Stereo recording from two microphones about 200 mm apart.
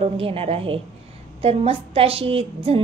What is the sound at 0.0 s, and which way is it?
A woman's voice, 30° right (ahead or behind).